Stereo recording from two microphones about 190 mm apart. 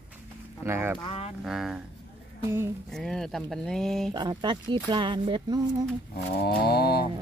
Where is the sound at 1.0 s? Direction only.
30° left (ahead or behind).